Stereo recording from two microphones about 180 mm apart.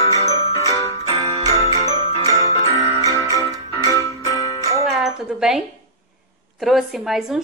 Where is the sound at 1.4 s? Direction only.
20° right (ahead or behind).